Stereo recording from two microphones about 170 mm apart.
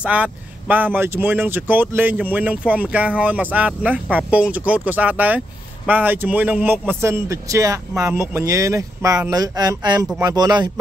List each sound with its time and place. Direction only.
0.0 s speech: 10° right (ahead or behind); by 10.7 s 25° right (ahead or behind)